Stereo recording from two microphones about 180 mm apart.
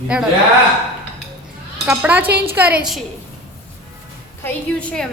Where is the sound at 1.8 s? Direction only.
10° right (ahead or behind).